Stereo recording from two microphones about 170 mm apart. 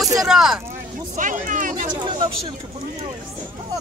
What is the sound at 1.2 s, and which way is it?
Speech, 50° right (ahead or behind).